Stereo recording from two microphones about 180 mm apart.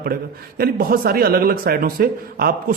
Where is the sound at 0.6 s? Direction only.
55° right (ahead or behind).